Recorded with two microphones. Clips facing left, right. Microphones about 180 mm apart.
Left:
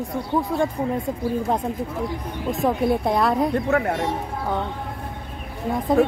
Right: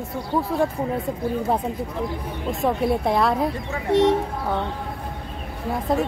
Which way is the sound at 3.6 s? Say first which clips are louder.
Left 5 dB; 70° left (ahead or behind).